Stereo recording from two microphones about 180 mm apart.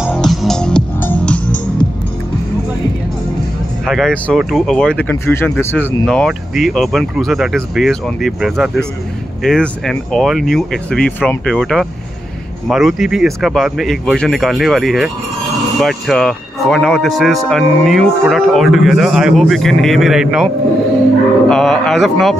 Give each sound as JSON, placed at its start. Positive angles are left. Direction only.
{"t": 0.1, "sound": "music", "side_deg": 0}
{"t": 3.8, "sound": "speech", "side_deg": 0}
{"t": 21.5, "sound": "speech", "side_deg": 0}